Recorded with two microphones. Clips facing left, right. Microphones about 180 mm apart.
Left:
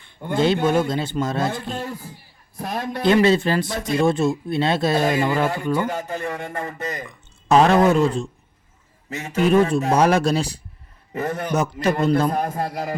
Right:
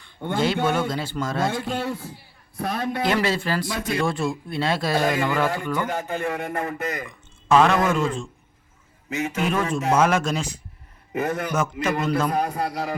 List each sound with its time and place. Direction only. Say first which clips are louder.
0.0 s speech: left 3 dB; 25° left (ahead or behind)
1.5 s a man's voice: right 2 dB; 85° right
2.6 s a man's voice: right 1 dB; 70° right (ahead or behind)
3.0 s a man's voice: left 8 dB; 25° left (ahead or behind); by 13.0 s 45° left (ahead or behind)